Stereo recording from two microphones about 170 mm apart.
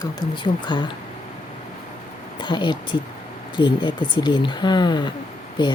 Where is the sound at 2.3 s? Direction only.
25° left (ahead or behind).